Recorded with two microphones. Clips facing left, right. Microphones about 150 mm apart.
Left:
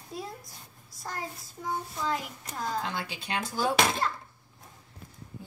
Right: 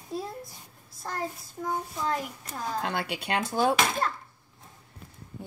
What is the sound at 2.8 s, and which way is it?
A woman's voice, 65° right (ahead or behind).